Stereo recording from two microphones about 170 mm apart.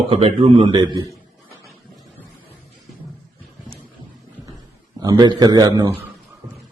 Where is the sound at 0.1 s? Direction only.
35° right (ahead or behind).